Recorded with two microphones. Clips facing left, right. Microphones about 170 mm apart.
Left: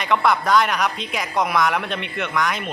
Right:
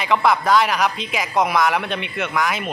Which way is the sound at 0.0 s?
Centre (ahead or behind).